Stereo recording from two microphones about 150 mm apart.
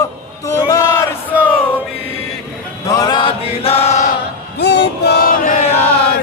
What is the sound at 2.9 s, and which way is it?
Chant, 25° left (ahead or behind).